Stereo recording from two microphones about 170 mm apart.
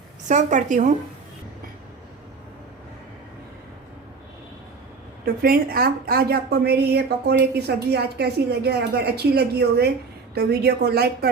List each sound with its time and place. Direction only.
0.3 s a woman's voice: 45° right (ahead or behind)
5.2 s a woman's voice: 60° right (ahead or behind)